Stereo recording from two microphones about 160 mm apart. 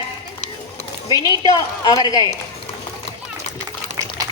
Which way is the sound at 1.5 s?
25° left (ahead or behind).